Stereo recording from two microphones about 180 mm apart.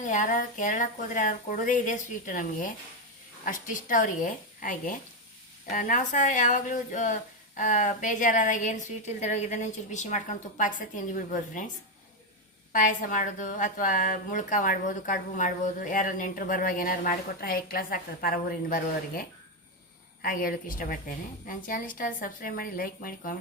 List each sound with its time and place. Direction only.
0.0 s a woman's voice: 45° left (ahead or behind)
12.7 s a woman's voice: 45° left (ahead or behind)
20.2 s a woman's voice: 50° left (ahead or behind)